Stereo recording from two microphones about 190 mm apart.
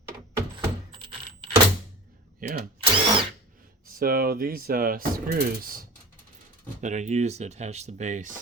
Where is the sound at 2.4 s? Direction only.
45° right (ahead or behind).